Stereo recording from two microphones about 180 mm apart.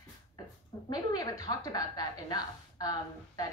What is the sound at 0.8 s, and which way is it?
A woman's voice, 20° left (ahead or behind).